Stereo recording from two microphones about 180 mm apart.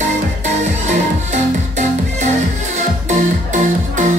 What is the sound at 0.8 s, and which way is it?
Music, 40° right (ahead or behind).